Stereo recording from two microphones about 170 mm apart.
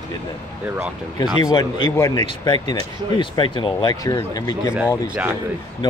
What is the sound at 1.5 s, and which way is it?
Speech, 25° left (ahead or behind).